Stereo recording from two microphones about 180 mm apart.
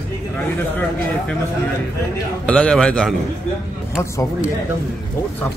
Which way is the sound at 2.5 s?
5° left (ahead or behind).